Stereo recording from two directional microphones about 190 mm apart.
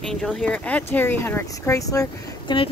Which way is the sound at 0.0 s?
Centre (ahead or behind).